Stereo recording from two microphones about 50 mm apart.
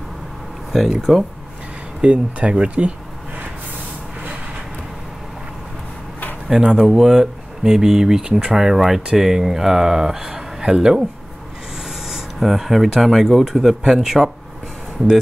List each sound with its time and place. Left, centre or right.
0.7 s speech: centre
2.0 s speech: centre
6.5 s speech: centre
12.1 s speech: centre